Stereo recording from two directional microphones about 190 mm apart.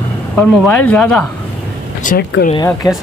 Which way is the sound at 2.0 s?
45° left (ahead or behind).